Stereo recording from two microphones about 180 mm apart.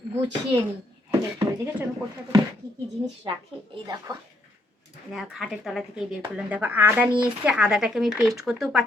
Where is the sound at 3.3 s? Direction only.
30° right (ahead or behind).